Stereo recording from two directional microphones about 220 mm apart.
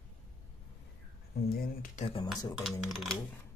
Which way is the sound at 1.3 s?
45° left (ahead or behind).